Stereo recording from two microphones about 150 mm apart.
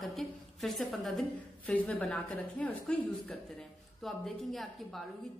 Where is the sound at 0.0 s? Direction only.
Centre (ahead or behind).